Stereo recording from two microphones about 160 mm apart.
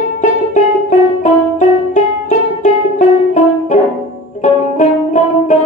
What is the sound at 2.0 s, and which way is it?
Music, 50° left (ahead or behind).